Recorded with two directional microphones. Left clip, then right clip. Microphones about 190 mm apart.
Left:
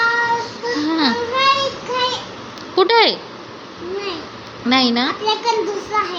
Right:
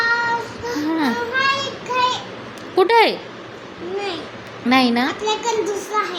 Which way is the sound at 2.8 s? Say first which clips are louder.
Left 1 dB; 15° right (ahead or behind).